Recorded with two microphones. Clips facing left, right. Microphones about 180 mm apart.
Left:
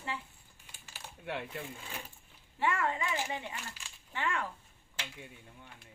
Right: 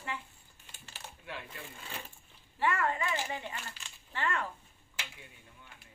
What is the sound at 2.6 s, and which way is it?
Speech, 20° left (ahead or behind).